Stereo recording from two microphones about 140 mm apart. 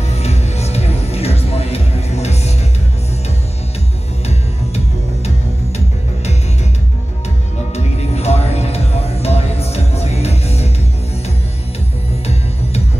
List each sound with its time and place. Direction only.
0.1 s music: 50° left (ahead or behind)
4.3 s music: 50° left (ahead or behind)
7.7 s music: 50° left (ahead or behind)